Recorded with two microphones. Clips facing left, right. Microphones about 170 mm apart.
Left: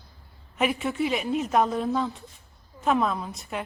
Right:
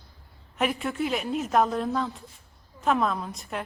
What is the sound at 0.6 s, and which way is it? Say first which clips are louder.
A woman's voice: left 2 dB; centre (ahead or behind).